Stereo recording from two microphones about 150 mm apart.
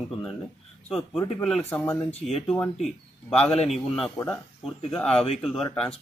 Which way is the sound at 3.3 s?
45° left (ahead or behind).